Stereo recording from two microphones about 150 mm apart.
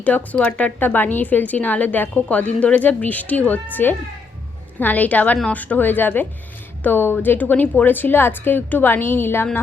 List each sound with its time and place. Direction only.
0.0 s a woman's voice: 10° left (ahead or behind)